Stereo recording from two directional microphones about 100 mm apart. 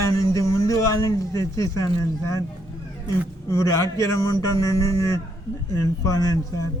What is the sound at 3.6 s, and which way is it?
A man's voice, 30° left (ahead or behind).